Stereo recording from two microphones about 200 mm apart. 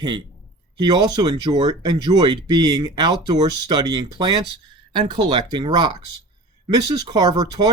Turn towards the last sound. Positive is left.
turn(degrees=-20)  # may be behind; listen again after turning